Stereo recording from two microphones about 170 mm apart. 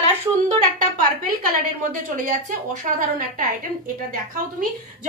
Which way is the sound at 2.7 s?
50° right (ahead or behind).